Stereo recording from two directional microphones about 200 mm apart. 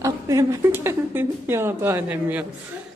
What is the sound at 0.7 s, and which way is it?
A woman's voice, 10° right (ahead or behind).